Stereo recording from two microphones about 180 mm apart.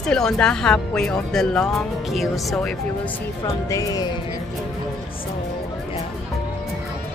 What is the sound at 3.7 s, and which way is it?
Speech, 20° left (ahead or behind).